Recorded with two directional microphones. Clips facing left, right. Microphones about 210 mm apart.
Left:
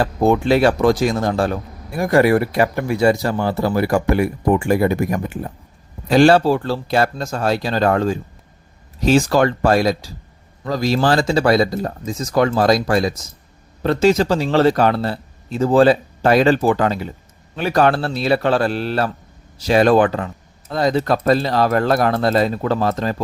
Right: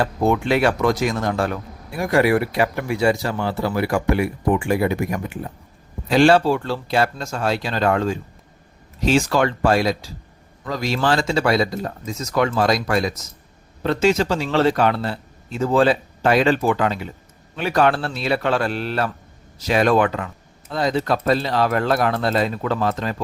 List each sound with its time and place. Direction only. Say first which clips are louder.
0.0 s speech: left 3 dB; 30° left (ahead or behind)